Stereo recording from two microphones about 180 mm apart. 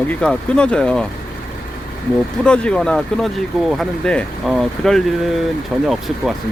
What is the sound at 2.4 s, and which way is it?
Speech, 5° left (ahead or behind).